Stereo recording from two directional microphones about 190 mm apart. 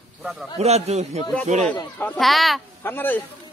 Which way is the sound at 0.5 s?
35° right (ahead or behind).